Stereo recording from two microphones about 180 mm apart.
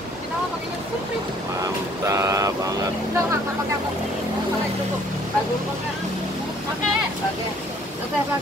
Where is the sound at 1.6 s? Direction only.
15° right (ahead or behind).